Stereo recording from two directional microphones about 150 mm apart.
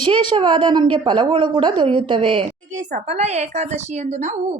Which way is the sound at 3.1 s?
50° right (ahead or behind).